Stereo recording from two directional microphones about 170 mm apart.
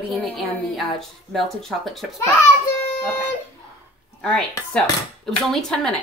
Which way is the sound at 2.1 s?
15° left (ahead or behind).